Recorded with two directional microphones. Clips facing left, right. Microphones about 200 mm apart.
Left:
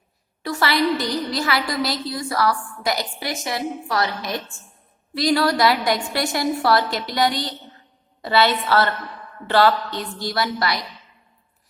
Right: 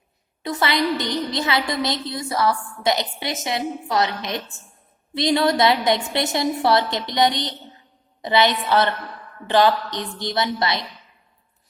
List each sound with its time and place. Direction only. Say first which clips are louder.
0.4 s a woman's voice: left 1 dB; 20° right (ahead or behind)